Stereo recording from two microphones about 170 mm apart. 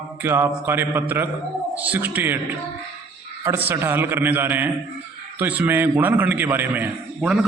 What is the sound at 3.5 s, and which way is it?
A man's voice, 15° right (ahead or behind).